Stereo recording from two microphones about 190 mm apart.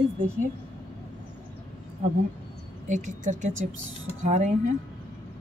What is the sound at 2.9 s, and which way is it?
A woman's voice, 40° right (ahead or behind).